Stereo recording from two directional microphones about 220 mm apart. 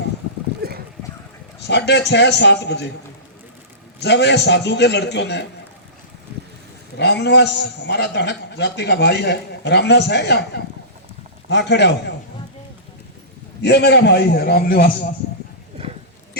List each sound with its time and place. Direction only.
0.6 s a sound: 45° right (ahead or behind)
1.6 s a man's voice: 50° left (ahead or behind)
4.0 s a man's voice: 50° left (ahead or behind)
6.9 s a man's voice: 50° left (ahead or behind)
13.6 s a man's voice: 50° left (ahead or behind)